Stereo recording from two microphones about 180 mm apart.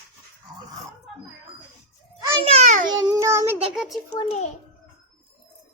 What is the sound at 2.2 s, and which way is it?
Speech, 25° right (ahead or behind).